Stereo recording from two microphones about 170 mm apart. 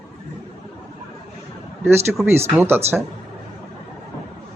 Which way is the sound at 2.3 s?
15° right (ahead or behind).